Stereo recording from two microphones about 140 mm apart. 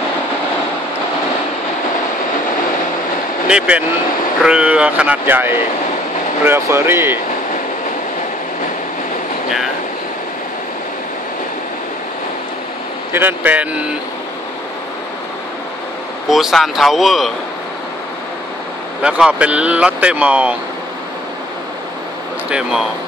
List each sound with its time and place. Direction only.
3.4 s speech: 5° right (ahead or behind)
13.1 s speech: 15° right (ahead or behind)
16.3 s speech: centre (ahead or behind)
19.0 s speech: 5° right (ahead or behind)
22.5 s speech: 5° right (ahead or behind)